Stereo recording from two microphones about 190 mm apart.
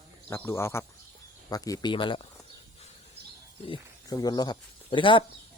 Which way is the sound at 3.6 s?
25° left (ahead or behind).